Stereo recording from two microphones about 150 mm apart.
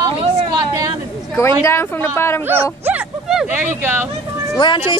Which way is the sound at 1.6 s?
15° left (ahead or behind).